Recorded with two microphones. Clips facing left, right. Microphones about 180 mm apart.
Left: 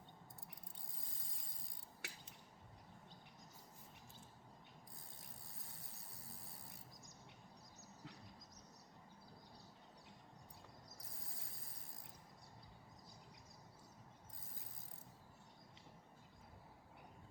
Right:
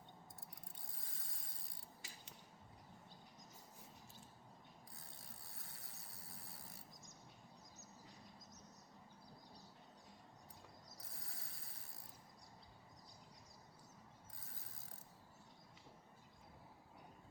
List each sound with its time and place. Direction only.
2.0 s scissors: 70° left (ahead or behind)
11.2 s mechanisms: 70° right (ahead or behind)